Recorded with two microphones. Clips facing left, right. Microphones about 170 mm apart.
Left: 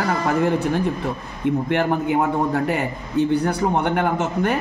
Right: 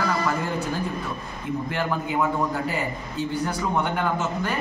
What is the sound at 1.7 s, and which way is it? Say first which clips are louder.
Speech: left 5 dB; 60° left (ahead or behind).